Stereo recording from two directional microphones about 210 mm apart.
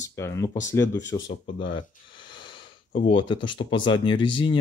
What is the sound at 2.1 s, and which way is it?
Snort, 20° left (ahead or behind).